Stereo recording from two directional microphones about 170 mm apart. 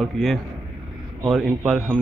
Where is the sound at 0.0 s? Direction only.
Centre (ahead or behind).